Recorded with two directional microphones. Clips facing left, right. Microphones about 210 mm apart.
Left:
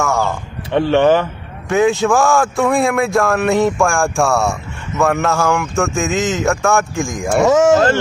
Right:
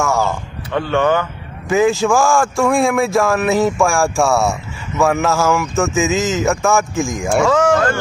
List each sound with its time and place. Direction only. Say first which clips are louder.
0.0 s a sound: even; centre (ahead or behind)
0.7 s speech: left 4 dB; 25° left (ahead or behind)
1.7 s speech: even; centre (ahead or behind)
7.4 s speech: left 5 dB; 25° left (ahead or behind)